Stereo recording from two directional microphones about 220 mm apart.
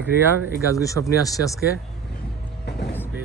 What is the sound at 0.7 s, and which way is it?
Speech, 15° left (ahead or behind).